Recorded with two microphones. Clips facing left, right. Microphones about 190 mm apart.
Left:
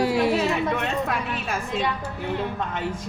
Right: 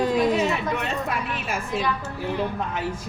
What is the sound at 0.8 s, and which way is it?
Speech, 5° right (ahead or behind).